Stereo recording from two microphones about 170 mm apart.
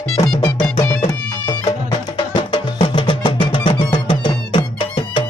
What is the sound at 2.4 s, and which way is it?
Music, 30° left (ahead or behind).